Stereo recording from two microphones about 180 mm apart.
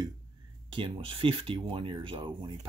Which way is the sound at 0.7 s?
30° right (ahead or behind).